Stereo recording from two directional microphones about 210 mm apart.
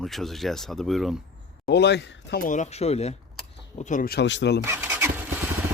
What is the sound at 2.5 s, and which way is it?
Speech, 30° left (ahead or behind).